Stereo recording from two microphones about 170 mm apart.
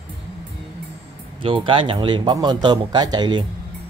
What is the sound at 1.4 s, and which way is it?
Speech, 30° right (ahead or behind).